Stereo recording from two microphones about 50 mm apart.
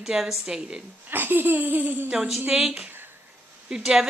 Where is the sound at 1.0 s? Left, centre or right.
Right.